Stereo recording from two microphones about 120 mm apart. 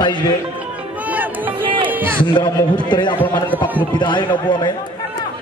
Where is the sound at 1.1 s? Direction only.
15° right (ahead or behind).